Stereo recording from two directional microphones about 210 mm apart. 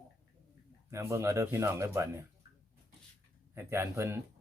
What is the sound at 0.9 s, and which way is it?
Speech, 15° right (ahead or behind).